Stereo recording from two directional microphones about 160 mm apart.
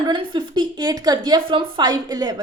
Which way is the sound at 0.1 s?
30° right (ahead or behind).